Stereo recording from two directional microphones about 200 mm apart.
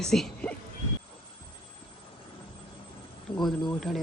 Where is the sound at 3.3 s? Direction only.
25° left (ahead or behind).